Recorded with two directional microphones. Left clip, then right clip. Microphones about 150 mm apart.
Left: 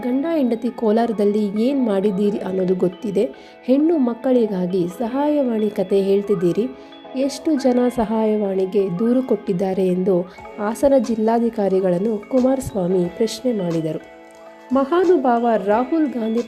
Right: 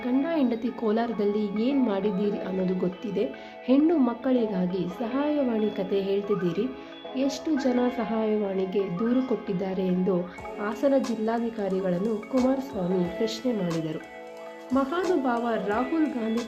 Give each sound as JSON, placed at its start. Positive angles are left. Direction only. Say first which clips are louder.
{"t": 0.0, "sound": "a woman's voice", "louder": "left 6 dB", "side_deg": 40}
{"t": 12.0, "sound": "speech", "louder": "left 7 dB", "side_deg": 0}
{"t": 15.4, "sound": "speech", "louder": "left 9 dB", "side_deg": 50}
{"t": 16.2, "sound": "speech", "louder": "left 8 dB", "side_deg": 0}